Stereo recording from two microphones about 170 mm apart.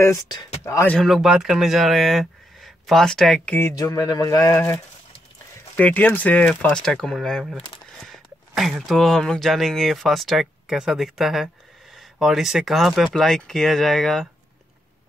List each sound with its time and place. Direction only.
0.0 s speech: 20° left (ahead or behind)
0.9 s speech: centre (ahead or behind)
3.5 s speech: 20° left (ahead or behind)
5.8 s speech: 10° left (ahead or behind)